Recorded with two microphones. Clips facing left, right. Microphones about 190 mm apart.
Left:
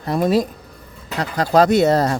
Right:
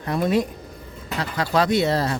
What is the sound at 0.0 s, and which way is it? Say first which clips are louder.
Speech: left 4 dB; 40° left (ahead or behind).